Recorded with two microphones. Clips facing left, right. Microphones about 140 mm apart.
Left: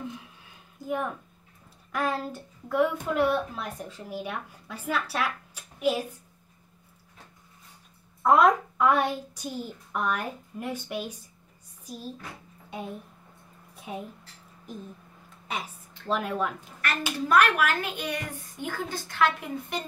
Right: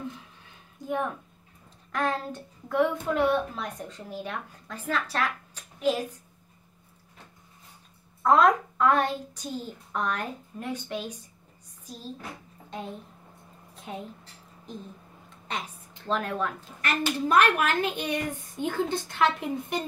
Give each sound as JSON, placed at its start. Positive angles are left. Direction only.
{"t": 0.8, "sound": "a woman's voice", "side_deg": 5}
{"t": 8.2, "sound": "a woman's voice", "side_deg": 10}
{"t": 11.8, "sound": "a sound", "side_deg": 10}
{"t": 15.2, "sound": "a sound", "side_deg": 5}
{"t": 16.1, "sound": "a woman's voice", "side_deg": 10}
{"t": 17.3, "sound": "a woman's voice", "side_deg": -20}